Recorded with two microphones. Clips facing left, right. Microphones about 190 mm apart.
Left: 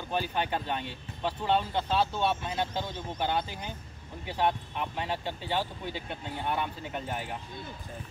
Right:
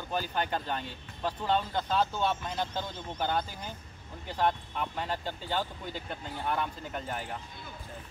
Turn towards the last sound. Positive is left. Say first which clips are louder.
# left 1 dB
turn(degrees=10)  # may be behind; listen again after turning